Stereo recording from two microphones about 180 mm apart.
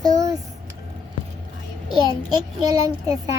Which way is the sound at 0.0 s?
20° right (ahead or behind).